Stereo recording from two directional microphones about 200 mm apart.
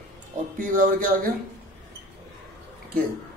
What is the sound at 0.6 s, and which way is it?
Speech, 45° right (ahead or behind).